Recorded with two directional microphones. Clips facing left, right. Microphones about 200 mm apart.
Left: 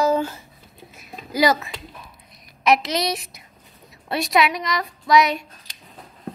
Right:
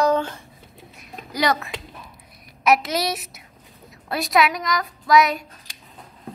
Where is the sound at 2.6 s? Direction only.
5° right (ahead or behind).